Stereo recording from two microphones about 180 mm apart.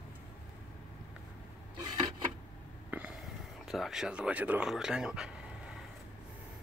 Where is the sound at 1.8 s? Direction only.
25° right (ahead or behind).